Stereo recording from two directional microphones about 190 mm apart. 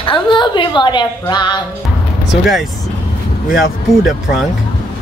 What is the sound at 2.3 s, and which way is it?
Speech, centre (ahead or behind).